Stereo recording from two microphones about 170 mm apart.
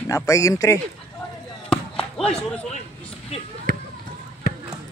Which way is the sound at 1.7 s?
5° left (ahead or behind).